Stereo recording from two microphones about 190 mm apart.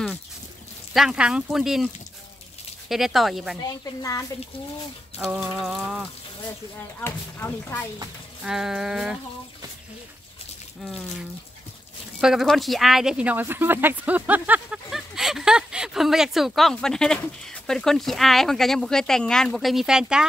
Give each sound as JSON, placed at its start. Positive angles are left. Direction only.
{"t": 0.9, "sound": "speech", "side_deg": -5}
{"t": 2.9, "sound": "speech", "side_deg": 0}
{"t": 3.6, "sound": "speech", "side_deg": 15}
{"t": 5.2, "sound": "speech", "side_deg": -5}
{"t": 6.4, "sound": "speech", "side_deg": 15}
{"t": 8.5, "sound": "speech", "side_deg": -5}
{"t": 12.2, "sound": "speech", "side_deg": 0}